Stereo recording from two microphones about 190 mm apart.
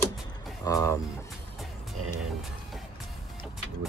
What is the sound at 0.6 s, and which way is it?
Speech, 15° left (ahead or behind).